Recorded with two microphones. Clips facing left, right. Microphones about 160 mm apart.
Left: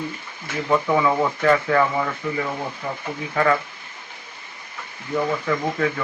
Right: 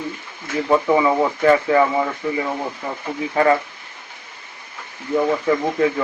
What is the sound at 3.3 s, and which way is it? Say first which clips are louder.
Speech: right 4 dB; 30° right (ahead or behind).